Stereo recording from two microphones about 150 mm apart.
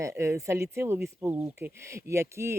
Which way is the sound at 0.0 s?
20° right (ahead or behind).